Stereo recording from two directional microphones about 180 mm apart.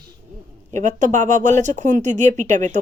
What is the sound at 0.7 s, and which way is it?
Speech, 45° right (ahead or behind).